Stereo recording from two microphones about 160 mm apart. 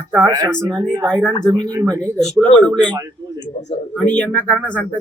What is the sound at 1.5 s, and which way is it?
Speech, 25° right (ahead or behind).